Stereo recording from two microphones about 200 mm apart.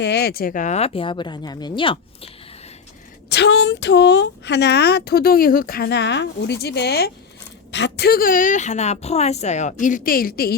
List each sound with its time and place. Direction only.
0.0 s speech: 55° left (ahead or behind); by 2.3 s 25° left (ahead or behind)
3.2 s a woman's voice: 60° left (ahead or behind)